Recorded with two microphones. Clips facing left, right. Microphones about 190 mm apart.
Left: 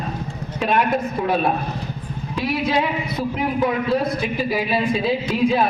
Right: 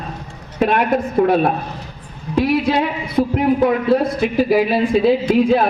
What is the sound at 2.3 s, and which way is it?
A man's voice, 60° right (ahead or behind).